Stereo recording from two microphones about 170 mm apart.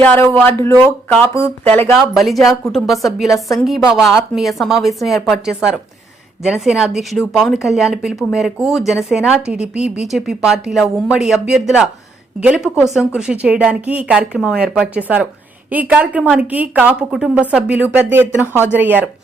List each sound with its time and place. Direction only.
0.0 s speech: 10° left (ahead or behind)
2.1 s a woman's voice: centre (ahead or behind)